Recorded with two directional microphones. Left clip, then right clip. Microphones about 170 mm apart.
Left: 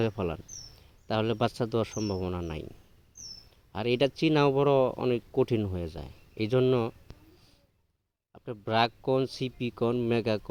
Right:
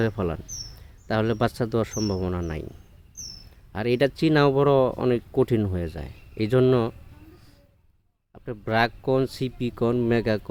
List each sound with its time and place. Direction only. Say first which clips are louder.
0.0 s speech: right 4 dB; 25° left (ahead or behind)
3.7 s speech: right 4 dB; 25° left (ahead or behind)
8.3 s speech: right 4 dB; 20° left (ahead or behind)